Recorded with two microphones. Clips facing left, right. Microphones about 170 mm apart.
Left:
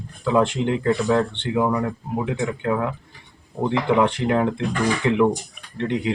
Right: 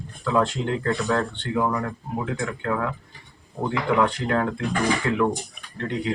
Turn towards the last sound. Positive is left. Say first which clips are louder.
# left 4 dB
turn(degrees=20)  # may be behind; listen again after turning